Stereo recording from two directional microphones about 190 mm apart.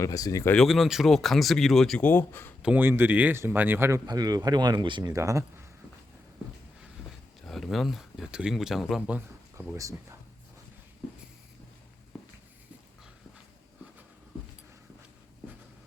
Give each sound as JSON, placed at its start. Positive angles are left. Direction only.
{"t": 0.0, "sound": "speech", "side_deg": 20}
{"t": 0.5, "sound": "speech", "side_deg": 0}
{"t": 2.6, "sound": "speech", "side_deg": -5}
{"t": 7.4, "sound": "speech", "side_deg": 0}